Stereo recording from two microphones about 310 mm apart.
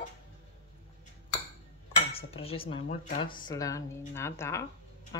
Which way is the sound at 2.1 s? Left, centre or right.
Centre.